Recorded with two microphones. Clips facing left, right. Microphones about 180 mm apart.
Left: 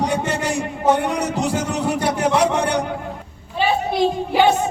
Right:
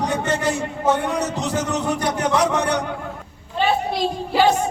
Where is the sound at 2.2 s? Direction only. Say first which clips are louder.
Left 2 dB; 30° left (ahead or behind).